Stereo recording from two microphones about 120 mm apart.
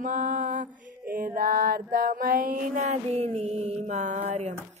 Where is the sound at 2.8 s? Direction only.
65° right (ahead or behind); by 4.4 s 80° right.